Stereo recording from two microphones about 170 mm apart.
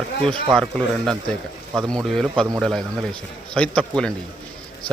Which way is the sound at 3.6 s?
5° left (ahead or behind).